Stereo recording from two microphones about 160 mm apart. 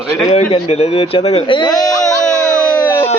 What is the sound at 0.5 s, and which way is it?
Speech, 40° left (ahead or behind).